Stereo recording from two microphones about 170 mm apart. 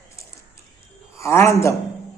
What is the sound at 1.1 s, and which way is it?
Speech, 15° left (ahead or behind).